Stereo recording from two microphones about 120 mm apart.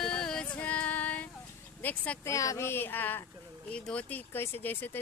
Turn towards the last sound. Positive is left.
turn(degrees=15)  # may be behind; listen again after turning